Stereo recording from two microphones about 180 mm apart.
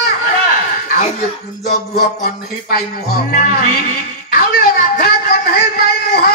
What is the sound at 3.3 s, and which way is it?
Speech, 50° left (ahead or behind).